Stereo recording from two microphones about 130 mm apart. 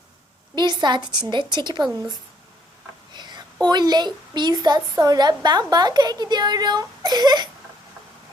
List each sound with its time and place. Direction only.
0.5 s a woman's voice: 35° right (ahead or behind)
3.2 s a sound: 35° right (ahead or behind)
3.7 s a woman's voice: 35° right (ahead or behind)